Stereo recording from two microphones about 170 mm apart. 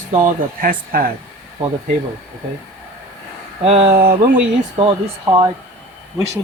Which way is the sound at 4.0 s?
60° right (ahead or behind).